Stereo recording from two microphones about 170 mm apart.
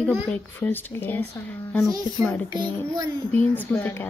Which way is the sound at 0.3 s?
10° left (ahead or behind).